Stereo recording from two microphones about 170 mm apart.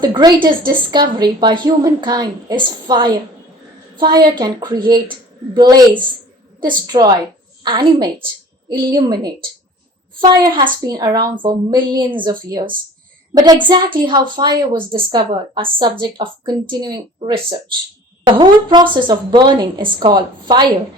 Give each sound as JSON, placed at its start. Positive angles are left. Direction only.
{"t": 0.0, "sound": "a woman's voice", "side_deg": -25}
{"t": 10.4, "sound": "a woman's voice", "side_deg": -30}